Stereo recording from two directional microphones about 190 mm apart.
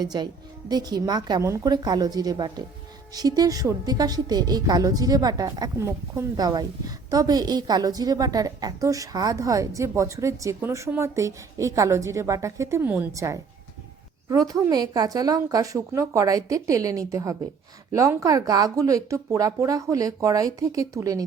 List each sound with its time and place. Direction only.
0.0 s a woman's voice: 20° right (ahead or behind)